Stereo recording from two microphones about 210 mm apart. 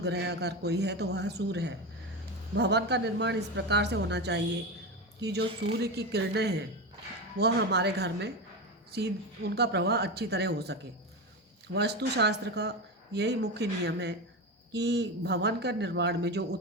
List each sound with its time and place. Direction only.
0.0 s a woman's voice: 50° right (ahead or behind)